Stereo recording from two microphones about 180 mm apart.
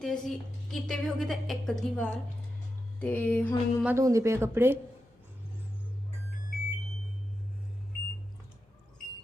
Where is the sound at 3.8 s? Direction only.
10° right (ahead or behind).